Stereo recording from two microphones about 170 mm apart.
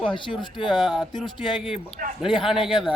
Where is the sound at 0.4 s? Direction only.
30° left (ahead or behind).